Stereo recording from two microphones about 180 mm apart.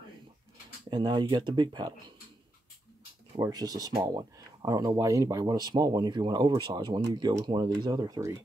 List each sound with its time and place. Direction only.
0.8 s speech: 25° right (ahead or behind)
3.3 s speech: 20° right (ahead or behind)